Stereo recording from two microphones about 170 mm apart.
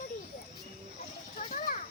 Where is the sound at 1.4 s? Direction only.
55° left (ahead or behind).